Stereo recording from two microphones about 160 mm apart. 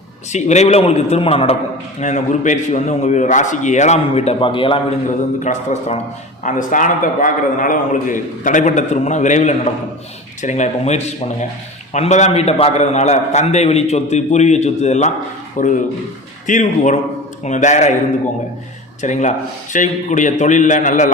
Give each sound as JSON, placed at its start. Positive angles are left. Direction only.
{"t": 0.3, "sound": "a man's voice", "side_deg": 45}
{"t": 2.0, "sound": "a man's voice", "side_deg": 50}
{"t": 5.0, "sound": "a man's voice", "side_deg": 50}
{"t": 19.0, "sound": "a man's voice", "side_deg": 50}